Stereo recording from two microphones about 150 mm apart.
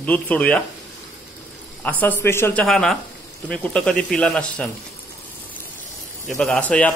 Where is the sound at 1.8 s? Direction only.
10° left (ahead or behind).